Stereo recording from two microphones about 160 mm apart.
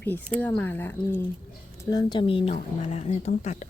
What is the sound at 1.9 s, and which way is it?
A woman's voice, 25° left (ahead or behind).